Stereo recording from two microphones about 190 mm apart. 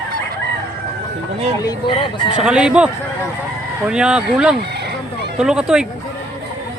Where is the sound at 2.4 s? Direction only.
5° right (ahead or behind).